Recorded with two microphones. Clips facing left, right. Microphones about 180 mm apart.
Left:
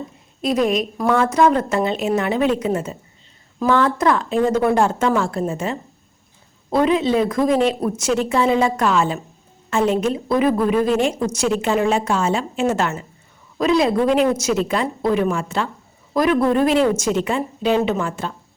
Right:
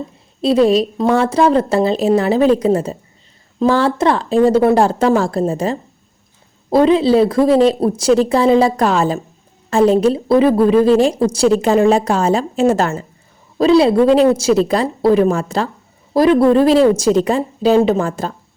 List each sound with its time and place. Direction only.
0.4 s a woman's voice: 30° right (ahead or behind)